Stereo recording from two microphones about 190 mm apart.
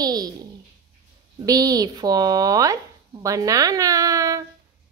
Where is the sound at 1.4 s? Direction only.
20° right (ahead or behind).